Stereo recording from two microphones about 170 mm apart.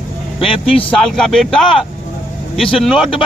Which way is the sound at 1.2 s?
5° left (ahead or behind).